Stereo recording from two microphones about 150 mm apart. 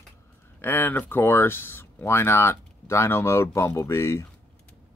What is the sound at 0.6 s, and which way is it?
Speech, 15° left (ahead or behind).